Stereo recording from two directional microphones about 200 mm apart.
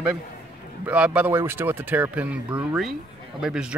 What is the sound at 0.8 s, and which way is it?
Speech, 5° right (ahead or behind).